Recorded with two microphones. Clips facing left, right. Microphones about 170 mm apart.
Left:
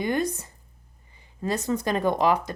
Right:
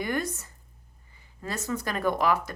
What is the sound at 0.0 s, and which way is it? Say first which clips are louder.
A woman's voice: left 4 dB; 20° left (ahead or behind).